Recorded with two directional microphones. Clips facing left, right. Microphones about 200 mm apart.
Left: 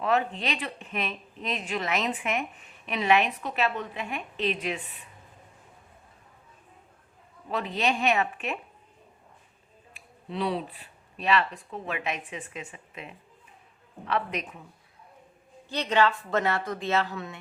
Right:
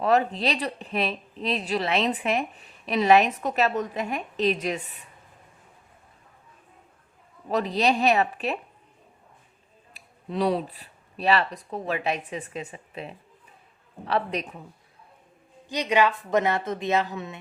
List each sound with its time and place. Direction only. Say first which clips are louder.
0.0 s a woman's voice: right 4 dB; 40° right (ahead or behind)
7.5 s a woman's voice: right 5 dB; 40° right (ahead or behind)
9.9 s a woman's voice: right 4 dB; 40° right (ahead or behind)
15.7 s speech: right 2 dB; 15° right (ahead or behind)